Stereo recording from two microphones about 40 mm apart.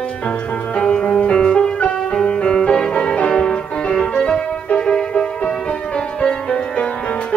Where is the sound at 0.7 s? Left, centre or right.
Left.